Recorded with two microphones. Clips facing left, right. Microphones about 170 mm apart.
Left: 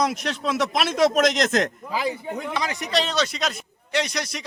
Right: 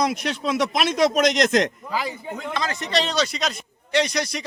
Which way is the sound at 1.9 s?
15° left (ahead or behind).